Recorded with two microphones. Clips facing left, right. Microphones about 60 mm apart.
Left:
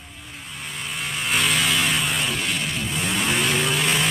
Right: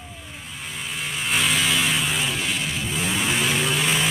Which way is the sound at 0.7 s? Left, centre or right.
Centre.